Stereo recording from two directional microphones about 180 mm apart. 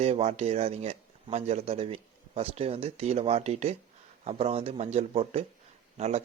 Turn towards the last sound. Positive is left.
turn(degrees=-35)  # may be behind; listen again after turning